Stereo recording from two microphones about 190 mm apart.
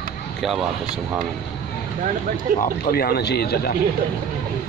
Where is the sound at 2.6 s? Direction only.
55° left (ahead or behind).